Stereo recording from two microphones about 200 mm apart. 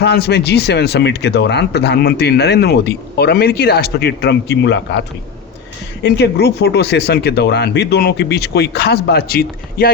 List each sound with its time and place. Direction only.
0.0 s speech: 55° left (ahead or behind)